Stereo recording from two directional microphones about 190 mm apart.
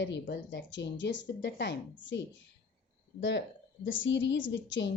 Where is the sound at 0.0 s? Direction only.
70° left (ahead or behind).